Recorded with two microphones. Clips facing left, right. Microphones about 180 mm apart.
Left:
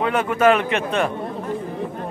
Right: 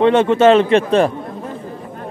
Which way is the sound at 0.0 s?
25° right (ahead or behind).